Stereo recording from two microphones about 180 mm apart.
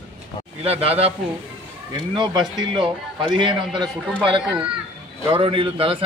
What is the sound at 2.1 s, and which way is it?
A man's voice, 25° right (ahead or behind).